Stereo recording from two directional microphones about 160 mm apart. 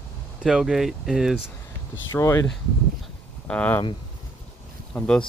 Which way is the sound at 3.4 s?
10° left (ahead or behind).